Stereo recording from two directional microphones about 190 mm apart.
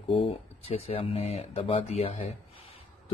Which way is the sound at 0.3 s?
30° left (ahead or behind).